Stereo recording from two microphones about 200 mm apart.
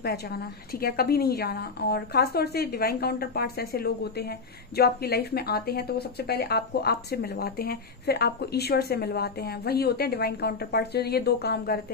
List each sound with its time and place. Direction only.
0.0 s a woman's voice: 50° left (ahead or behind)